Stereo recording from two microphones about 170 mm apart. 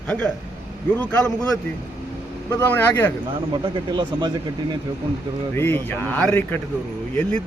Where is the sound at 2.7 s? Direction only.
10° left (ahead or behind).